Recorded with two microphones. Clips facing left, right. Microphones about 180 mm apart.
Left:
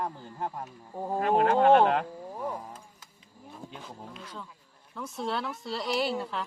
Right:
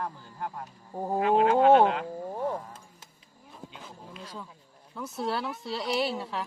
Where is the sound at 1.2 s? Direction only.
45° left (ahead or behind).